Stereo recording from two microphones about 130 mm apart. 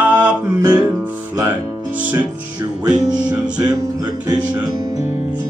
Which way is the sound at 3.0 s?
30° right (ahead or behind).